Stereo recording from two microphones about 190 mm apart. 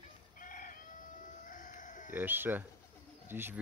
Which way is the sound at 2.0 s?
10° right (ahead or behind).